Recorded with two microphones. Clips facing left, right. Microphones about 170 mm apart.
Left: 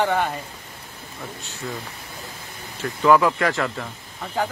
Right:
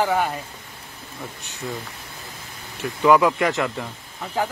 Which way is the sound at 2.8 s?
15° right (ahead or behind).